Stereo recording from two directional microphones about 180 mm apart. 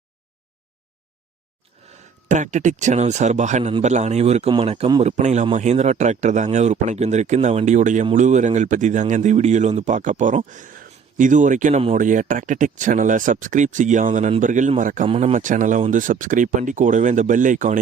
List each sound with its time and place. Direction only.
2.2 s speech: 45° right (ahead or behind)
15.0 s speech: 35° right (ahead or behind)